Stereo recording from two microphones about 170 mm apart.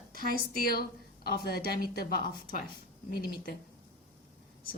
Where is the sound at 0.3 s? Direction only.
60° left (ahead or behind).